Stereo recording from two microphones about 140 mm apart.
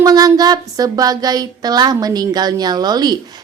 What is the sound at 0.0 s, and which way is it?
Speech, 25° right (ahead or behind).